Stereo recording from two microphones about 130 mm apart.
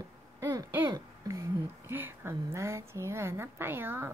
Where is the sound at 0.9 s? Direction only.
25° right (ahead or behind).